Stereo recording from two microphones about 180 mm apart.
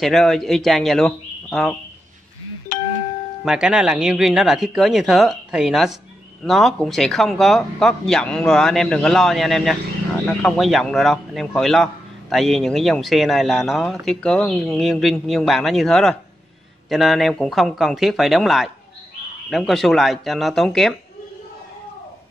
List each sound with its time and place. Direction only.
0.0 s speech: centre (ahead or behind)
3.4 s speech: 5° right (ahead or behind)